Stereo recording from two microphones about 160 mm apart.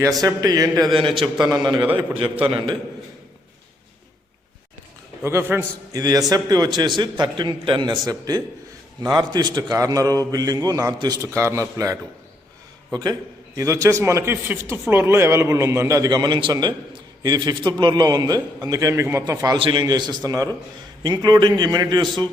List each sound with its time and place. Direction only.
0.2 s a man's voice: 20° right (ahead or behind)
0.9 s a man's voice: 35° right (ahead or behind)
5.2 s a man's voice: 15° right (ahead or behind)